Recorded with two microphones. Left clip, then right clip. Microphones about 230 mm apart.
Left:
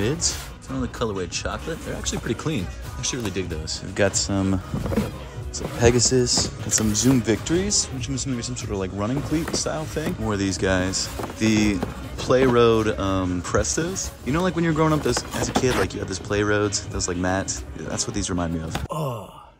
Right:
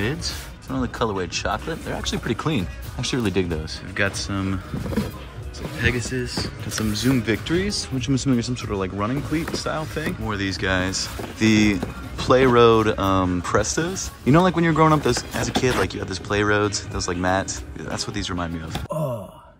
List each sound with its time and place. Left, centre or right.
0.0 s speech: centre
3.9 s speech: centre
5.9 s speech: left